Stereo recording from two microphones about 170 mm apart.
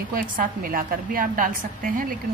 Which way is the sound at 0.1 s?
55° right (ahead or behind).